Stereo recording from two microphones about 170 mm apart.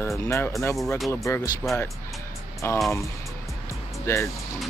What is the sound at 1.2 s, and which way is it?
Speech, 20° left (ahead or behind).